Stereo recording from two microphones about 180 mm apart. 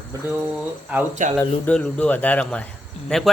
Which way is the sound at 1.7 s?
5° left (ahead or behind).